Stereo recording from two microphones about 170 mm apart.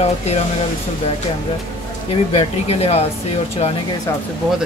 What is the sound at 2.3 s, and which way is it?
Speech, 40° left (ahead or behind).